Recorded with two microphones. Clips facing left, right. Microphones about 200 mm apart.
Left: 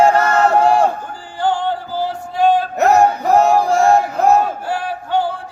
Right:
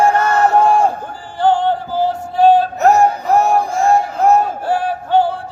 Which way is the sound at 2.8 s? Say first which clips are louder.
Even; 75° left (ahead or behind).